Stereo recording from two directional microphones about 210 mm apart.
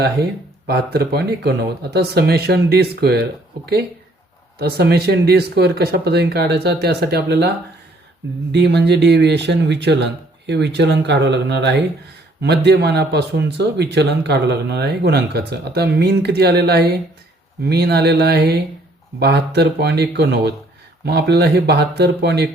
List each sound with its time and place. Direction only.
0.7 s speech: 50° right (ahead or behind)
4.6 s speech: 50° right (ahead or behind)
8.5 s speech: 55° right (ahead or behind)